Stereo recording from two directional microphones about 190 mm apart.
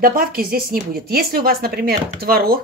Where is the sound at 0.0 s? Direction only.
50° right (ahead or behind).